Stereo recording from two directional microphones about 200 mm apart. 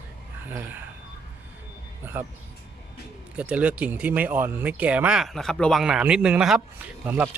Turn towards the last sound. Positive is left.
turn(degrees=-10)  # may be behind; listen again after turning